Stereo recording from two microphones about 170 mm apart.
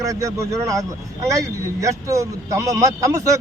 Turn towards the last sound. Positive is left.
turn(degrees=-20)  # may be behind; listen again after turning